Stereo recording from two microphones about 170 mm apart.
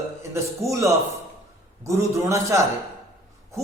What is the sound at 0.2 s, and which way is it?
A man's voice, 15° right (ahead or behind).